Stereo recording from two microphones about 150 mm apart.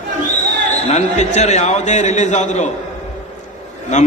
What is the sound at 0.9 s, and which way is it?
A man's voice, 50° left (ahead or behind).